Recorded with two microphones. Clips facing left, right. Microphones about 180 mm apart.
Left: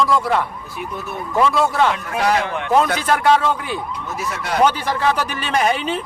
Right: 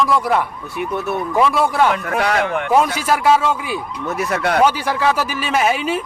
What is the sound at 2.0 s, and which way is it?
Speech, 60° right (ahead or behind).